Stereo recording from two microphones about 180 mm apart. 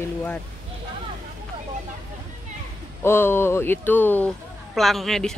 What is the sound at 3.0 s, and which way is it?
A woman's voice, 15° left (ahead or behind).